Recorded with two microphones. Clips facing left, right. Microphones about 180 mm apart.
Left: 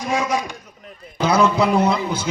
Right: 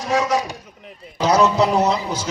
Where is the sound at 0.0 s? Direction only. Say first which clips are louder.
Right 2 dB; 40° right (ahead or behind).